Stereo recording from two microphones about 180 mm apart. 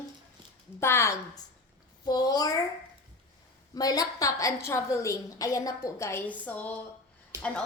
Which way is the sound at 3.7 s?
20° left (ahead or behind).